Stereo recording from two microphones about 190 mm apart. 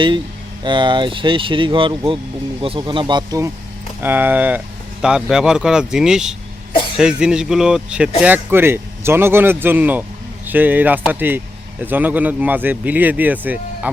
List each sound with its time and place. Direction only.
0.6 s speech: 25° right (ahead or behind); by 13.9 s 10° right (ahead or behind)